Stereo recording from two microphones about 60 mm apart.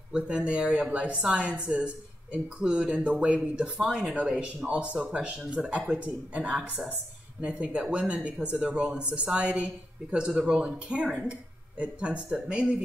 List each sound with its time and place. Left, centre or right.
0.1 s a woman's voice: centre